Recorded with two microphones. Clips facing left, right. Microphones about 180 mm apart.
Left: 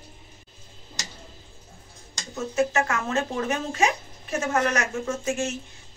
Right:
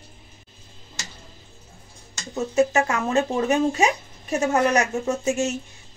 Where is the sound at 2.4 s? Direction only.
20° right (ahead or behind).